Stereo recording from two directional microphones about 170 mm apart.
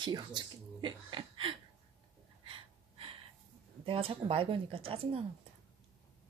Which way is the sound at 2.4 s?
30° right (ahead or behind).